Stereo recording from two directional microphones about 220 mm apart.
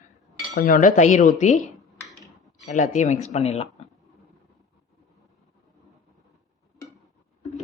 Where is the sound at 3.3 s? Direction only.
30° left (ahead or behind).